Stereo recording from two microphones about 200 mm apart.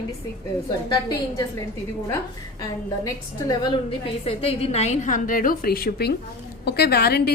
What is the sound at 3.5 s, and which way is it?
A woman's voice, 25° left (ahead or behind).